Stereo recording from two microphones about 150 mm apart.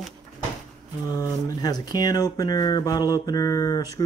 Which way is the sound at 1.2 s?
25° left (ahead or behind).